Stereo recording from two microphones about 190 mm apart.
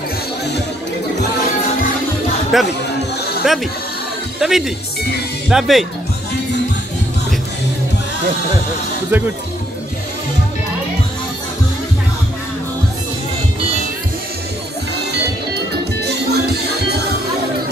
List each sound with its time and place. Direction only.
2.5 s speech: centre (ahead or behind)
9.1 s speech: 10° right (ahead or behind)
16.0 s music: 60° right (ahead or behind)